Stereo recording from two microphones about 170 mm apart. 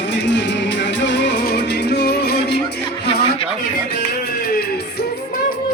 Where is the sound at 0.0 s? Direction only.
90° left; by 2.6 s 70° left (ahead or behind).